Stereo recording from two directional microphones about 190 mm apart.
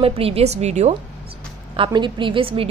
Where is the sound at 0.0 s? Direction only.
30° right (ahead or behind).